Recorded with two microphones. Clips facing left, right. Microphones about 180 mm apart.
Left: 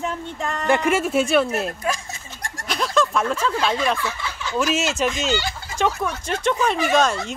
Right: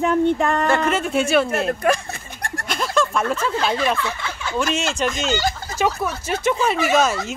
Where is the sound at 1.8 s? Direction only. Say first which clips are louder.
Right 6 dB; 60° right (ahead or behind).